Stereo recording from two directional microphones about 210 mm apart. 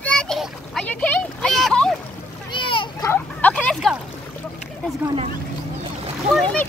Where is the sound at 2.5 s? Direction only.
25° left (ahead or behind).